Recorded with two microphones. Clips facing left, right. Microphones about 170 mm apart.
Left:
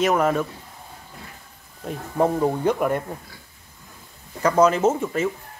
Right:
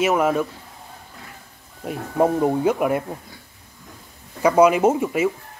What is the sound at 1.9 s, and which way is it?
Speech, 10° right (ahead or behind).